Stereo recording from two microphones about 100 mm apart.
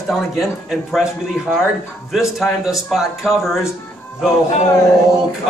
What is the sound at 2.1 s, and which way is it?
Speech, centre (ahead or behind).